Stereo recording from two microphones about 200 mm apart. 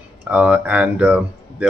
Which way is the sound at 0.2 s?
5° right (ahead or behind).